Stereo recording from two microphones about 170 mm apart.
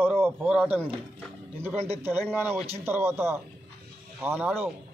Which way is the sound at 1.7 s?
35° right (ahead or behind).